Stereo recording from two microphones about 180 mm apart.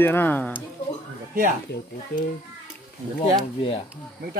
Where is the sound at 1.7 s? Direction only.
65° left (ahead or behind).